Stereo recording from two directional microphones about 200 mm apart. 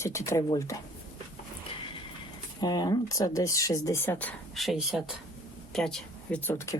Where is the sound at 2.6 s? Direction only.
20° left (ahead or behind).